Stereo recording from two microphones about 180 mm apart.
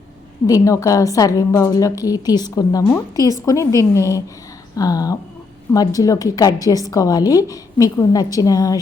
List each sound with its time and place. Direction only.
0.4 s a woman's voice: 20° left (ahead or behind)